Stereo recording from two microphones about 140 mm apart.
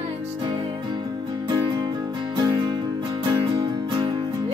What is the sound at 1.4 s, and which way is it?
Music, 25° right (ahead or behind).